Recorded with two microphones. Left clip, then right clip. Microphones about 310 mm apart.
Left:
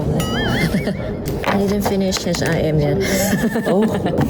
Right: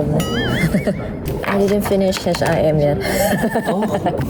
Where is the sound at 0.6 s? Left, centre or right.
Centre.